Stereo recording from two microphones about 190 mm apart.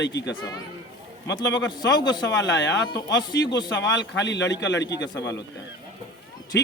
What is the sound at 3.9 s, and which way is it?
Speech, 70° left (ahead or behind).